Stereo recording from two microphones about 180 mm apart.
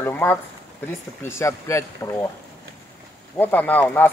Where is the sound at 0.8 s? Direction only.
15° left (ahead or behind).